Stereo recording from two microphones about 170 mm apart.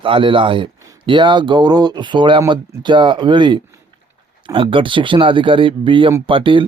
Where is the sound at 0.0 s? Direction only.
30° right (ahead or behind).